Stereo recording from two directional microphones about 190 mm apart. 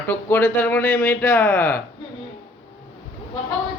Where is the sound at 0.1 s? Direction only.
10° left (ahead or behind).